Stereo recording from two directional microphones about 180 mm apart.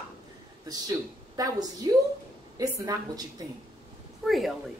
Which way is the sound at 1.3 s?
20° right (ahead or behind).